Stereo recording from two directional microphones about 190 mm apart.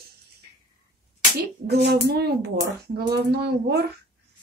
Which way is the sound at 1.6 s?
60° right (ahead or behind).